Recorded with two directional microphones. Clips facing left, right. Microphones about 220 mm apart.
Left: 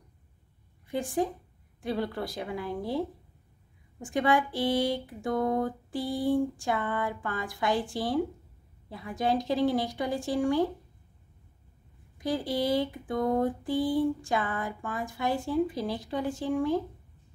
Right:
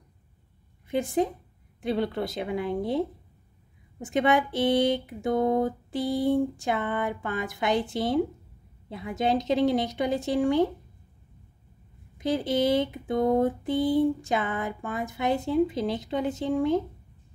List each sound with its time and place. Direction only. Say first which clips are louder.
0.8 s a woman's voice: right 4 dB; 20° right (ahead or behind)
4.0 s speech: right 3 dB; 20° right (ahead or behind)
12.2 s speech: right 4 dB; 20° right (ahead or behind)